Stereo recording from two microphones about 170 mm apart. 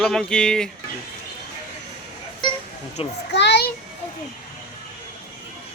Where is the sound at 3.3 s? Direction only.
85° left.